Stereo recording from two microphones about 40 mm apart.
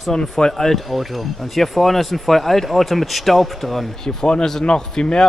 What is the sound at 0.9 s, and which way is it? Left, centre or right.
Speech, centre.